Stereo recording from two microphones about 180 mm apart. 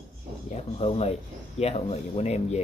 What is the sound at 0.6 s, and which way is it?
Speech, 35° left (ahead or behind).